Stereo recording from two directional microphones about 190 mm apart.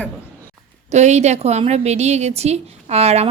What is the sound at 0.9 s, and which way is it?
A woman's voice, 35° right (ahead or behind).